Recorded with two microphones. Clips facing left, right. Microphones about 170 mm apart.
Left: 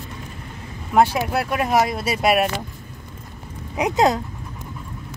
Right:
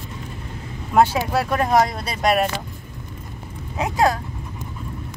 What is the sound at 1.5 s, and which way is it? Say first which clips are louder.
Speech: right 1 dB; 10° left (ahead or behind).